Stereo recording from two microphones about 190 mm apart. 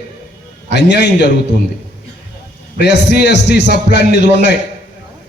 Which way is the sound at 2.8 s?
65° left (ahead or behind).